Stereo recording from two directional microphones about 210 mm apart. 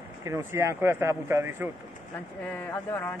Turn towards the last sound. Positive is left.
turn(degrees=10)  # may be behind; listen again after turning